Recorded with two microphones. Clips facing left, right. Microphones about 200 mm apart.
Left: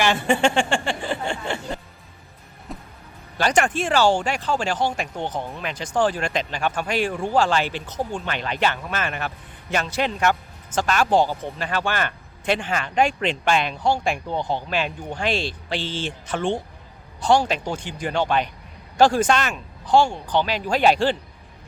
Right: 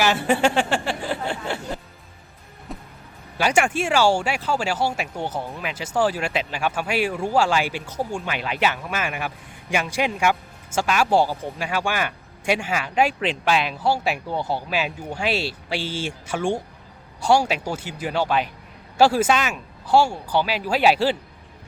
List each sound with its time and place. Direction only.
0.0 s a sound: 5° right (ahead or behind)
2.7 s music: centre (ahead or behind)
3.3 s speech: 10° right (ahead or behind)